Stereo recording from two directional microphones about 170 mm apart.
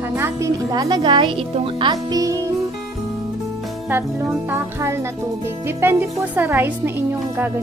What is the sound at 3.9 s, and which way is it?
Speech, 10° right (ahead or behind).